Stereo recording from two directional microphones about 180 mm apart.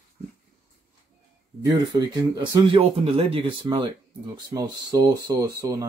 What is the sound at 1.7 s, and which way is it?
Speech, 20° right (ahead or behind).